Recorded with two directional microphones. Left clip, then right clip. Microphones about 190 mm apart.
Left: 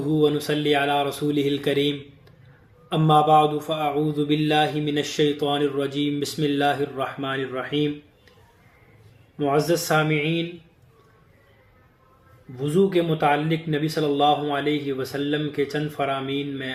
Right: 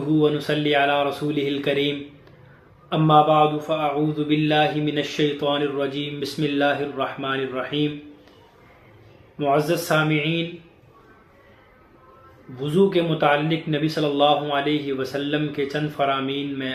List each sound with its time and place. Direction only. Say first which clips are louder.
0.2 s speech: left 1 dB; 50° left (ahead or behind)
2.9 s speech: right 1 dB; 50° left (ahead or behind)
9.4 s speech: right 1 dB; 50° left (ahead or behind)
12.5 s speech: right 1 dB; 45° left (ahead or behind)